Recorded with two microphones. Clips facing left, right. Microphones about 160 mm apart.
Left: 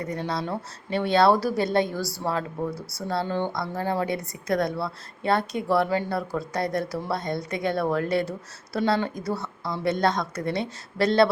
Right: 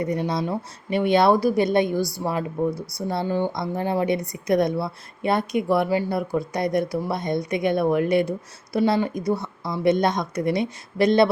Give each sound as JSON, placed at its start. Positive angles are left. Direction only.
{"t": 0.0, "sound": "a woman's voice", "side_deg": -15}